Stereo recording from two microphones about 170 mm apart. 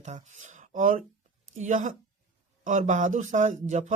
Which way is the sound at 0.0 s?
45° right (ahead or behind).